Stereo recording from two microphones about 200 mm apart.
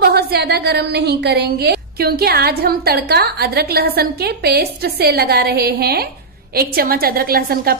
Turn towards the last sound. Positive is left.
turn(degrees=-50)  # may be behind; listen again after turning